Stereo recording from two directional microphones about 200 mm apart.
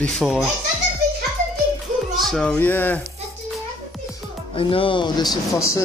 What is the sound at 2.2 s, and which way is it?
Speech, 5° left (ahead or behind).